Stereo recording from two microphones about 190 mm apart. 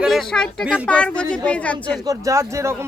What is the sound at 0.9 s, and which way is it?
Speech, 5° left (ahead or behind).